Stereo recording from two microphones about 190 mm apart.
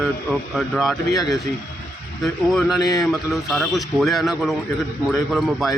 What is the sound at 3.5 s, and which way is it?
Speech, centre (ahead or behind).